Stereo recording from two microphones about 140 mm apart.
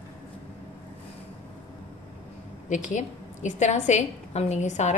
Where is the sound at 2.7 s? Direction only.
60° left (ahead or behind).